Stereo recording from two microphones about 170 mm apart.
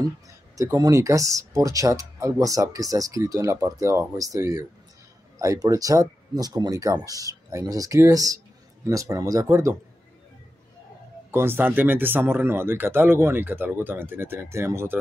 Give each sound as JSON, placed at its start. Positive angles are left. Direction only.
{"t": 0.6, "sound": "speech", "side_deg": -20}
{"t": 11.3, "sound": "speech", "side_deg": -15}